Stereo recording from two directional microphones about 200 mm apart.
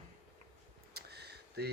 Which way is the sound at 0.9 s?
55° right (ahead or behind).